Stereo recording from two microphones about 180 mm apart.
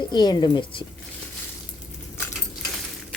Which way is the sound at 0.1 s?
25° left (ahead or behind).